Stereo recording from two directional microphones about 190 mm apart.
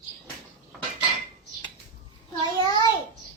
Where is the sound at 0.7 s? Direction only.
Centre (ahead or behind).